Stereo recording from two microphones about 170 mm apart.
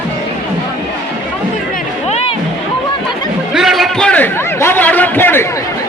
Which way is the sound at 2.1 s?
40° left (ahead or behind).